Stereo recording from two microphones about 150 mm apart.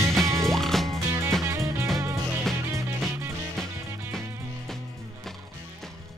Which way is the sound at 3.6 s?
5° left (ahead or behind).